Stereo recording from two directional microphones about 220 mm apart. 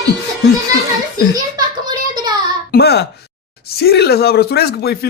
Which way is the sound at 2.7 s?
50° left (ahead or behind).